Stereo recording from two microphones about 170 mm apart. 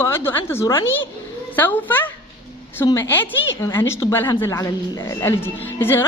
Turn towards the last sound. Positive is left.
turn(degrees=15)  # may be behind; listen again after turning